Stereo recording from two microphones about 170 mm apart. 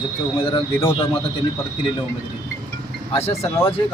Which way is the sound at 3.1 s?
35° left (ahead or behind).